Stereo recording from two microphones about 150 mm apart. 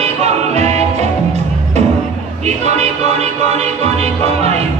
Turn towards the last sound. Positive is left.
turn(degrees=-45)  # may be behind; listen again after turning